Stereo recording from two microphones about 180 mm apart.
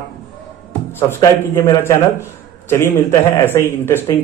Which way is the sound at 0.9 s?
15° left (ahead or behind).